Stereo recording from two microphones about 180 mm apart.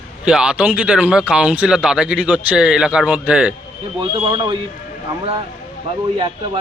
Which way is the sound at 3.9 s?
25° right (ahead or behind).